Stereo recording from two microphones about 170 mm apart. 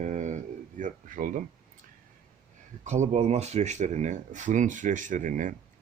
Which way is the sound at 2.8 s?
45° right (ahead or behind).